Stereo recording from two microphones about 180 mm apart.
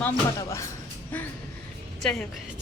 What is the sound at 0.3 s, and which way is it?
Speech, 15° left (ahead or behind).